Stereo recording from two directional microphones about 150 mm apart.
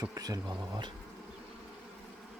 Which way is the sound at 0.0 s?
25° right (ahead or behind).